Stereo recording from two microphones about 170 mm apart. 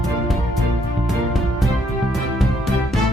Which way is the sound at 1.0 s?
Centre (ahead or behind).